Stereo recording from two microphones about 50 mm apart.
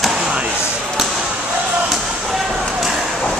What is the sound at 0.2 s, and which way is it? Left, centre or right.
Basketball bounce, centre.